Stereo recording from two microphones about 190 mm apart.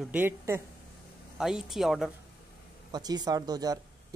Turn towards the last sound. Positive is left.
turn(degrees=-20)  # may be behind; listen again after turning